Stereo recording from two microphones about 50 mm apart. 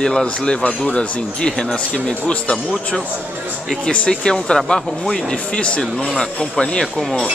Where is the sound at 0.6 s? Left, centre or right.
Left.